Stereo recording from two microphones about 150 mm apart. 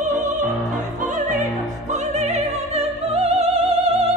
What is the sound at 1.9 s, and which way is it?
Opera, 50° right (ahead or behind).